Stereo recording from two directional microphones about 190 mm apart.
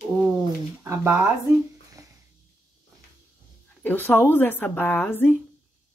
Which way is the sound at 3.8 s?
10° left (ahead or behind).